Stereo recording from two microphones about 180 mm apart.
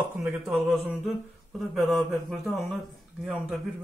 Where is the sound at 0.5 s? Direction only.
Centre (ahead or behind).